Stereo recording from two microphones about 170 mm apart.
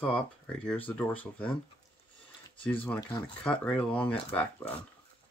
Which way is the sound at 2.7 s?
10° left (ahead or behind).